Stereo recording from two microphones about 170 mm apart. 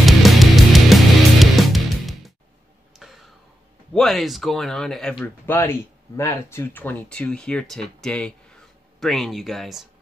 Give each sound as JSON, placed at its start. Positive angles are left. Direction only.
{"t": 0.0, "sound": "music", "side_deg": 0}
{"t": 3.0, "sound": "a sound", "side_deg": 0}
{"t": 3.9, "sound": "speech", "side_deg": 0}